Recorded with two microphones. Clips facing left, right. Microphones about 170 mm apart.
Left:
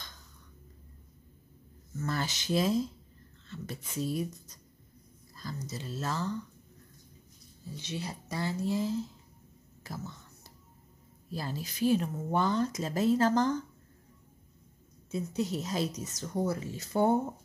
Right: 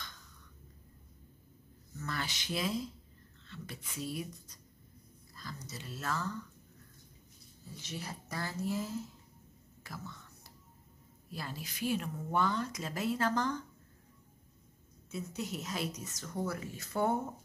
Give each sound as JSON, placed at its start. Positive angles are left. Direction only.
{"t": 2.0, "sound": "speech", "side_deg": 40}
{"t": 5.3, "sound": "speech", "side_deg": 35}
{"t": 7.9, "sound": "speech", "side_deg": 20}
{"t": 9.8, "sound": "whispering", "side_deg": 40}
{"t": 11.3, "sound": "speech", "side_deg": 35}
{"t": 15.0, "sound": "speech", "side_deg": 35}
{"t": 16.2, "sound": "speech", "side_deg": 20}